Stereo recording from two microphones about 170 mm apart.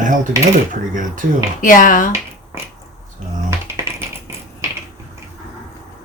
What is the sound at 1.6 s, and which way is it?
Speech, 50° left (ahead or behind).